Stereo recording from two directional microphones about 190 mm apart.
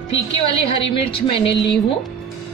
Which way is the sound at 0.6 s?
30° left (ahead or behind).